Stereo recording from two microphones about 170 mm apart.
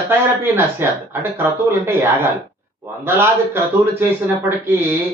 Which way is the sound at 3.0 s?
15° right (ahead or behind).